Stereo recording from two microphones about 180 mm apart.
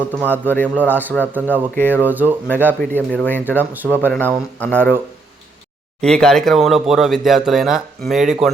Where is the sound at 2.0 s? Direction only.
10° right (ahead or behind).